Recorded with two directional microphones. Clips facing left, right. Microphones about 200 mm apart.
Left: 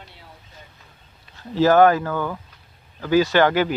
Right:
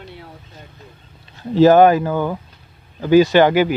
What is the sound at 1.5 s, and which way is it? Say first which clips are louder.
Speech: right 4 dB; 20° right (ahead or behind).